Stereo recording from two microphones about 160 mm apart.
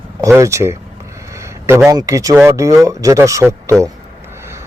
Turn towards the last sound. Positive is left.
turn(degrees=-20)  # may be behind; listen again after turning